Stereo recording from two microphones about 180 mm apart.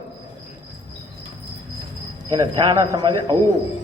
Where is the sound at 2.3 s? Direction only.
20° right (ahead or behind).